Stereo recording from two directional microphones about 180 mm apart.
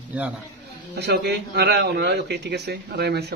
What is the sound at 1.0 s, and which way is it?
A man's voice, 65° right (ahead or behind).